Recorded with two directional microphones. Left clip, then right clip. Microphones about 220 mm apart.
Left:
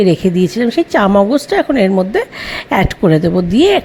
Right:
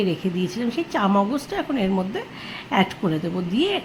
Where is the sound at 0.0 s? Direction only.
35° left (ahead or behind).